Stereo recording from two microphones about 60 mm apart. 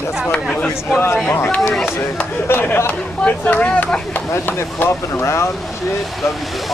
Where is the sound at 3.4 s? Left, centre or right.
Left.